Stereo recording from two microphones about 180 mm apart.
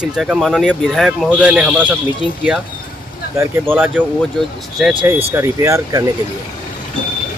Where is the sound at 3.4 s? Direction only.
10° right (ahead or behind).